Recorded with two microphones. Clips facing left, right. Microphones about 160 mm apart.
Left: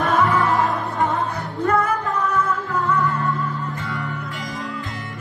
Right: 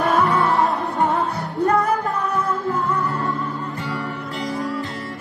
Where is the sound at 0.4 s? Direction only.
35° right (ahead or behind).